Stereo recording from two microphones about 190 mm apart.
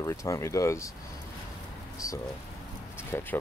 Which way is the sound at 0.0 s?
15° left (ahead or behind).